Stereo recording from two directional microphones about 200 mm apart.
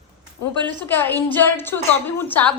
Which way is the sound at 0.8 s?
10° left (ahead or behind).